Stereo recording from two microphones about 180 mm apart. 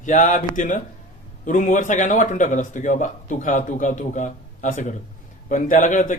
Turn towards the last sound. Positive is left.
turn(degrees=45)  # may be behind; listen again after turning